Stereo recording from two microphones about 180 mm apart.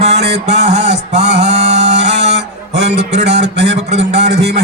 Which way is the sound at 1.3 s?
40° right (ahead or behind).